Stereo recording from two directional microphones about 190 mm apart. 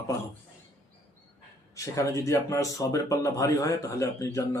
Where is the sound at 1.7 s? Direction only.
15° left (ahead or behind).